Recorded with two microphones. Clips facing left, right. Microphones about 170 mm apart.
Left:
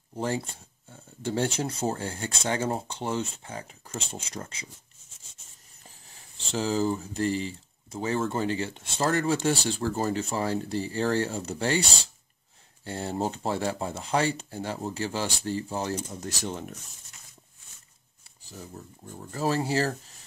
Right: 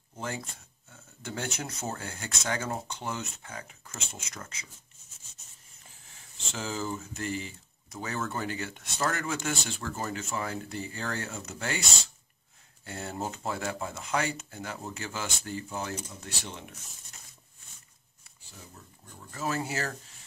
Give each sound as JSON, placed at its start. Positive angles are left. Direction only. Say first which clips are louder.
{"t": 0.1, "sound": "speech", "louder": "left 7 dB", "side_deg": 30}
{"t": 5.9, "sound": "speech", "louder": "left 4 dB", "side_deg": 35}
{"t": 19.0, "sound": "speech", "louder": "left 6 dB", "side_deg": 35}